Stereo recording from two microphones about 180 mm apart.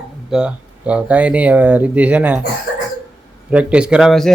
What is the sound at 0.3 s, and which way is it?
A man's voice, 5° right (ahead or behind).